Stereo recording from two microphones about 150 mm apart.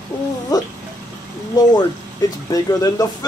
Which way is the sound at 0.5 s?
25° left (ahead or behind).